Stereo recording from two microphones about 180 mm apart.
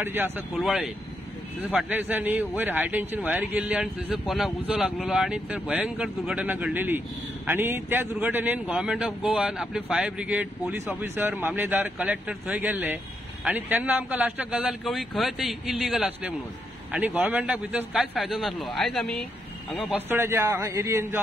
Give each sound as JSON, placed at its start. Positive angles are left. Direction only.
{"t": 0.0, "sound": "a man's voice", "side_deg": -10}
{"t": 19.9, "sound": "a man's voice", "side_deg": -15}